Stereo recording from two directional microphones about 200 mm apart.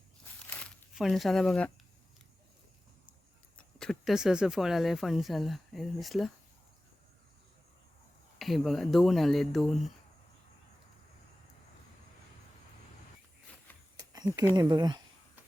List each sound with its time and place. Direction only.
0.5 s speech: 5° left (ahead or behind)
3.8 s speech: centre (ahead or behind)
8.4 s speech: centre (ahead or behind)
13.9 s a sound: 20° right (ahead or behind)
14.5 s speech: 20° right (ahead or behind)